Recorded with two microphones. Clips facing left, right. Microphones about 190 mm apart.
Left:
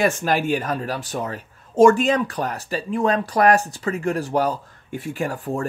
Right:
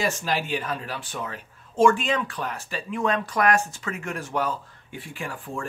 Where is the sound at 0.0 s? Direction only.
55° left (ahead or behind).